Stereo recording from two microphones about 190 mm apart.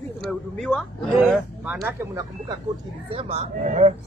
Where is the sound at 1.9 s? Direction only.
20° right (ahead or behind).